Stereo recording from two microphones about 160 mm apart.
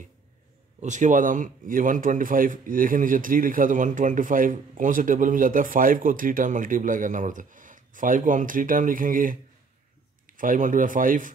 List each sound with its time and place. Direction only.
0.7 s a man's voice: 50° right (ahead or behind)